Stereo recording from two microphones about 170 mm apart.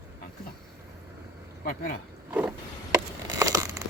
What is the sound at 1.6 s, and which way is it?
Speech, 55° left (ahead or behind).